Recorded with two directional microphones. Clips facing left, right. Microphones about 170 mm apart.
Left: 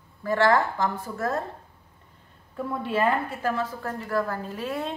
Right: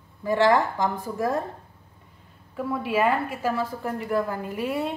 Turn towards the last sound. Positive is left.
turn(degrees=-10)  # may be behind; listen again after turning